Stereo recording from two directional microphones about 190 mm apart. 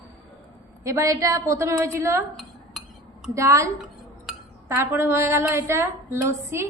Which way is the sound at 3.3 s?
15° right (ahead or behind).